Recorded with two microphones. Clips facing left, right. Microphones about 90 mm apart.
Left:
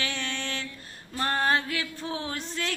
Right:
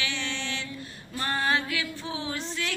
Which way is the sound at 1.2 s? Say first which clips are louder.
Left 2 dB; 40° left (ahead or behind).